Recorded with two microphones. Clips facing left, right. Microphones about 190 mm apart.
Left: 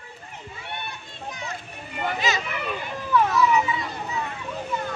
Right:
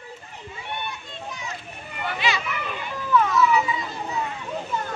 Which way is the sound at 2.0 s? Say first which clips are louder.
Left 1 dB; 45° left (ahead or behind).